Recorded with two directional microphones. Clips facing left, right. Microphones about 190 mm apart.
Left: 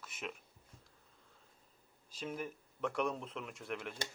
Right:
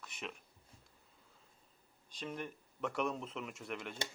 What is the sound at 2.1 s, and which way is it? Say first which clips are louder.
Speech: left 1 dB; 5° left (ahead or behind).